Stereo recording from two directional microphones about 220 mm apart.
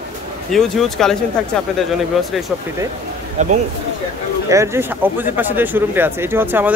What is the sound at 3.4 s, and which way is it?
Speech, 30° right (ahead or behind).